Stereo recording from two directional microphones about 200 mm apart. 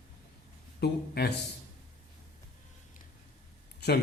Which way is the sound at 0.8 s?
55° left (ahead or behind).